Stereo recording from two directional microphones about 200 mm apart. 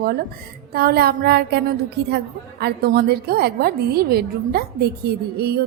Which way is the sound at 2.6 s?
50° right (ahead or behind).